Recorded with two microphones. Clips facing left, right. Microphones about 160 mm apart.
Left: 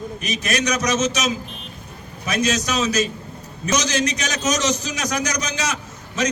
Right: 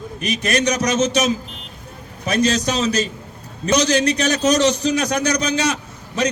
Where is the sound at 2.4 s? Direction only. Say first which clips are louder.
Even; 30° right (ahead or behind).